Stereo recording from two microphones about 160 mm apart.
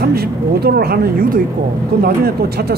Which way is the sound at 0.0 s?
80° right.